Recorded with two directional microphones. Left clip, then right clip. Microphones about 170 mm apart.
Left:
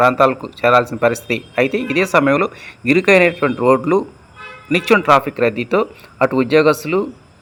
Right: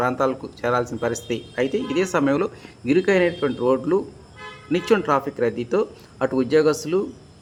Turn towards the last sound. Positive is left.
turn(degrees=20)  # may be behind; listen again after turning